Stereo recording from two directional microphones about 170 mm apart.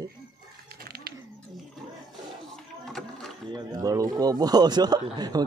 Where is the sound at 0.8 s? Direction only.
65° right (ahead or behind).